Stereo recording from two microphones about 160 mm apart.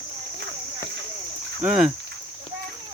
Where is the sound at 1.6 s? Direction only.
5° right (ahead or behind).